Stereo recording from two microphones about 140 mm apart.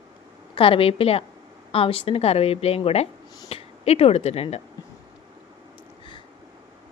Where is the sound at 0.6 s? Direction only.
40° left (ahead or behind).